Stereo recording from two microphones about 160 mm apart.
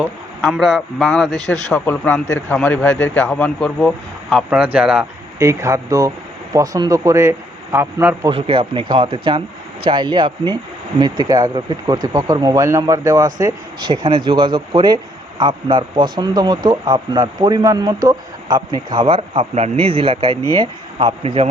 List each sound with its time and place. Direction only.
0.0 s speech: 5° right (ahead or behind)
5.4 s speech: 20° right (ahead or behind)
8.3 s speech: 35° right (ahead or behind)